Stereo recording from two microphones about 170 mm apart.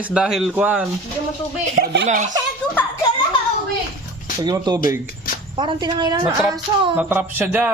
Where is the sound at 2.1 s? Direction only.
45° right (ahead or behind).